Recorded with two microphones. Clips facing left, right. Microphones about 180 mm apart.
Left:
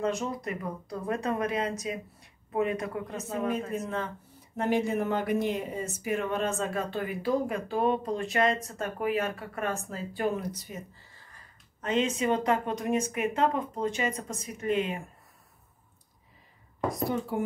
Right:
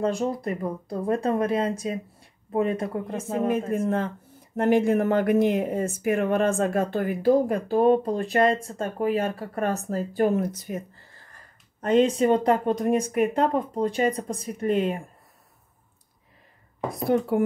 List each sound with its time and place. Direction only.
0.0 s speech: 30° right (ahead or behind)
3.2 s speech: 50° right (ahead or behind)
11.8 s speech: 40° right (ahead or behind)
16.9 s speech: 60° right (ahead or behind)